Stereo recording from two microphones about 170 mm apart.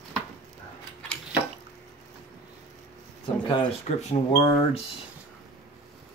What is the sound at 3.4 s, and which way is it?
Speech, 25° left (ahead or behind).